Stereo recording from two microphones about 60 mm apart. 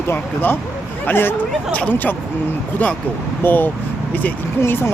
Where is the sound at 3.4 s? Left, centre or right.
Left.